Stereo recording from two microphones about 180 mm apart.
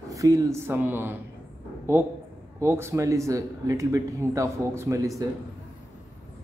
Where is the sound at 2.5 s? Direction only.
15° right (ahead or behind).